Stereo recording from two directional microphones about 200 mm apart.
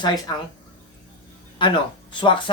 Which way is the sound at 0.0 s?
20° left (ahead or behind).